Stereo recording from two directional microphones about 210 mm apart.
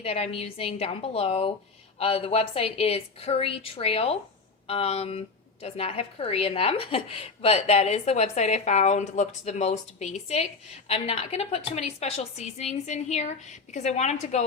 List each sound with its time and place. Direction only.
0.0 s a woman's voice: 30° left (ahead or behind)